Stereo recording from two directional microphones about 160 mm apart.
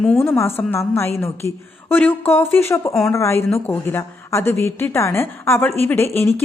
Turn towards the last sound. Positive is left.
turn(degrees=15)  # may be behind; listen again after turning